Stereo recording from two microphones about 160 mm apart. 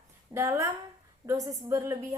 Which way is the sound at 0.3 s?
20° right (ahead or behind).